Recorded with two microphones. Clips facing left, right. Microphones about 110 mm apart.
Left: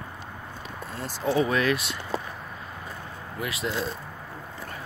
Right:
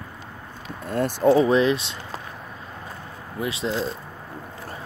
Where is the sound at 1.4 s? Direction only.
30° right (ahead or behind).